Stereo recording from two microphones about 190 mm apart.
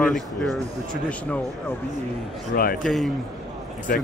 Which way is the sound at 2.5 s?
50° left (ahead or behind).